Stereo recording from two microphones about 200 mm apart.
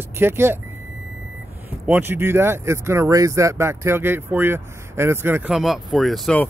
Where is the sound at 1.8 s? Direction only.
10° right (ahead or behind).